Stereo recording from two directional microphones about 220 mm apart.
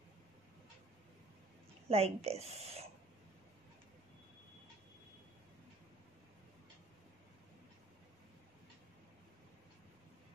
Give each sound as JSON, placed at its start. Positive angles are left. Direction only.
{"t": 1.9, "sound": "a woman's voice", "side_deg": -30}